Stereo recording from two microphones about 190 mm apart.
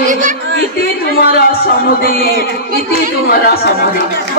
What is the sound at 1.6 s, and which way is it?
Music, 50° left (ahead or behind).